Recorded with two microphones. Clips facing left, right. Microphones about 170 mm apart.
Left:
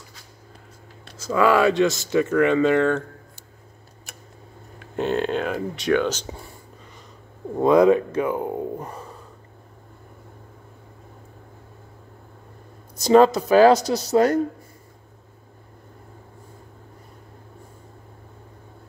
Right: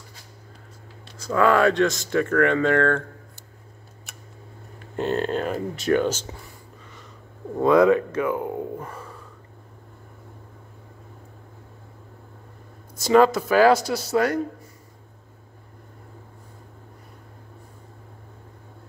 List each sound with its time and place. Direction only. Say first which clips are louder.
1.1 s speech: left 1 dB; 5° left (ahead or behind)
5.0 s speech: left 1 dB; centre (ahead or behind)
7.5 s speech: left 1 dB; 15° left (ahead or behind)
12.9 s speech: left 2 dB; 20° left (ahead or behind)